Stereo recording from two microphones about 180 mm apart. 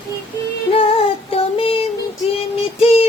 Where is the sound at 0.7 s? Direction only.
30° left (ahead or behind).